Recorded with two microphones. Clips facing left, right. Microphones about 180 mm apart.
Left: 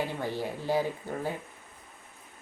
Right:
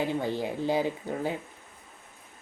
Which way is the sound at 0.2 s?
15° right (ahead or behind).